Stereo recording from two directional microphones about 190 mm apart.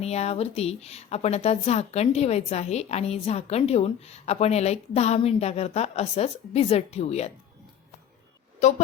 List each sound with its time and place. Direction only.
0.0 s a woman's voice: 35° left (ahead or behind)